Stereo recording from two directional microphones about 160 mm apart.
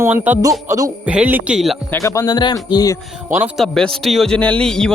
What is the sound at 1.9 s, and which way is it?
Speech, 20° left (ahead or behind).